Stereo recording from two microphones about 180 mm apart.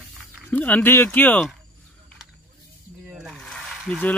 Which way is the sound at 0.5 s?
10° left (ahead or behind).